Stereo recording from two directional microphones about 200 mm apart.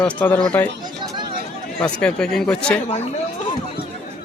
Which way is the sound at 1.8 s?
5° left (ahead or behind).